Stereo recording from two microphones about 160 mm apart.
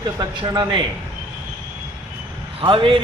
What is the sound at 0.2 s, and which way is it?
Speech, 25° right (ahead or behind).